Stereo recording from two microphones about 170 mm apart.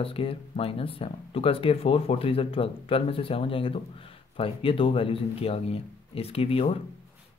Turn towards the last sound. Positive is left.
turn(degrees=35)  # may be behind; listen again after turning